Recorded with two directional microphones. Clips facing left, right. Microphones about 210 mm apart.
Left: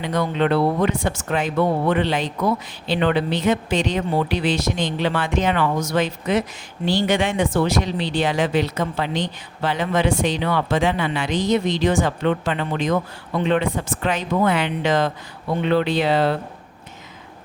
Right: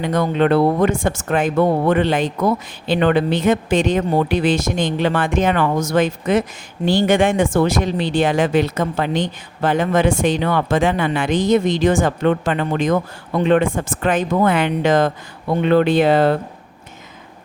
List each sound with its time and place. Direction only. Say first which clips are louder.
0.0 s speech: right 4 dB; 50° right (ahead or behind)